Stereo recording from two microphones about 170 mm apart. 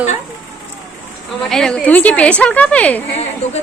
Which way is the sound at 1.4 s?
5° left (ahead or behind).